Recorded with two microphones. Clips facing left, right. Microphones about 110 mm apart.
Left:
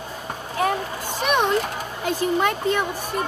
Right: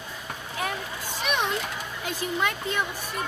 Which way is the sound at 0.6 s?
45° left (ahead or behind).